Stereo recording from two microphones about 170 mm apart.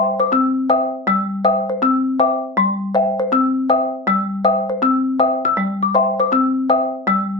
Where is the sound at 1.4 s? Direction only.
35° left (ahead or behind).